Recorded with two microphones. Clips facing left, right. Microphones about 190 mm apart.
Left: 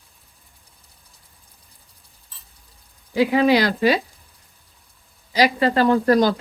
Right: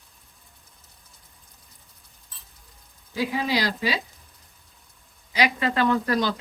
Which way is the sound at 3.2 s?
65° left (ahead or behind).